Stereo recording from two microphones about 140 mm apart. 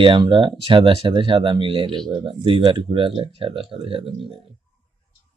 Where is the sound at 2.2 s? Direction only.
35° right (ahead or behind).